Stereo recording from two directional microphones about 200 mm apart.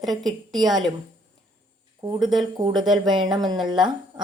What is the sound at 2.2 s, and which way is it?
Speech, centre (ahead or behind).